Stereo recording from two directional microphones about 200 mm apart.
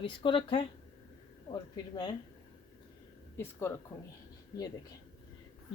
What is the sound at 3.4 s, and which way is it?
Speech, 15° left (ahead or behind).